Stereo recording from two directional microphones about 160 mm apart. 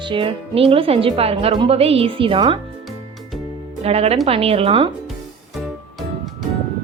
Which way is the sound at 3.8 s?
40° right (ahead or behind).